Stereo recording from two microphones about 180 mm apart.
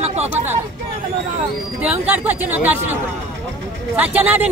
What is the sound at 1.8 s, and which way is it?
Speech, 5° right (ahead or behind).